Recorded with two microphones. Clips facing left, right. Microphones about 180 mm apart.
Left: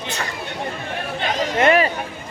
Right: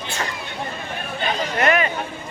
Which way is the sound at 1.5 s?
30° left (ahead or behind).